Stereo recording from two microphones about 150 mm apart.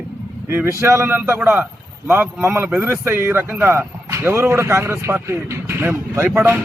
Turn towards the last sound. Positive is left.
turn(degrees=-15)  # may be behind; listen again after turning